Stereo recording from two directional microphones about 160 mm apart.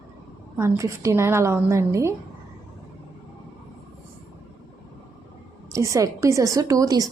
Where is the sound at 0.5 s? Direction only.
15° right (ahead or behind).